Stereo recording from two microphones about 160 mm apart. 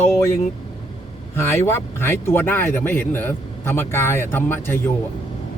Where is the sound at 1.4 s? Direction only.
15° left (ahead or behind).